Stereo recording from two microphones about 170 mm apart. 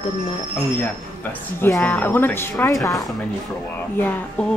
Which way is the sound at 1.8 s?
5° left (ahead or behind).